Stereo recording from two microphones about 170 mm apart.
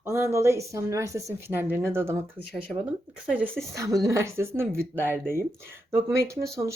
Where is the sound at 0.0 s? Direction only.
15° right (ahead or behind).